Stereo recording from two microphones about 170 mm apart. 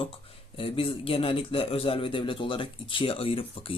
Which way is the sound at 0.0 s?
30° left (ahead or behind).